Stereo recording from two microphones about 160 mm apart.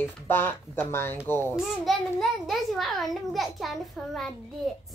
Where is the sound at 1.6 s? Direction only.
Centre (ahead or behind).